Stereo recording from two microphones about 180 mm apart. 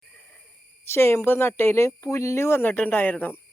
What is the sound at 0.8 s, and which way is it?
Speech, 15° left (ahead or behind).